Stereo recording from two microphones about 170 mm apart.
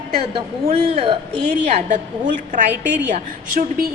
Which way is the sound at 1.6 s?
45° right (ahead or behind).